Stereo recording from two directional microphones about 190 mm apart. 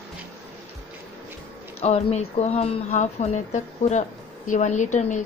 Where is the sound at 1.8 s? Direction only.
35° left (ahead or behind).